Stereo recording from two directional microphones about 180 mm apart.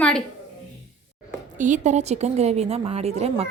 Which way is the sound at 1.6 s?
45° right (ahead or behind).